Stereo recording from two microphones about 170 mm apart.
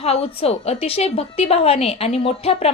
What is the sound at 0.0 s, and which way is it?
A woman's voice, 35° left (ahead or behind).